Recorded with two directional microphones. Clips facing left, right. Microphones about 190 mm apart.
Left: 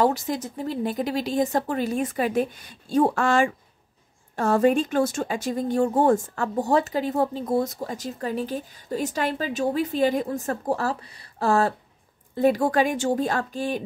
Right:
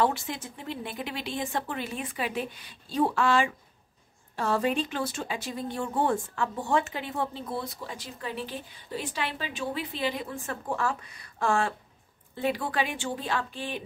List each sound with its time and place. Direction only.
0.0 s speech: 40° left (ahead or behind)